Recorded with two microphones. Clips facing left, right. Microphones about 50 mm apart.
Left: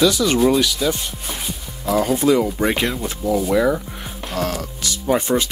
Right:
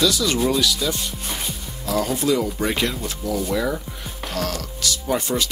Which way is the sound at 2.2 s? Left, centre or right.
Left.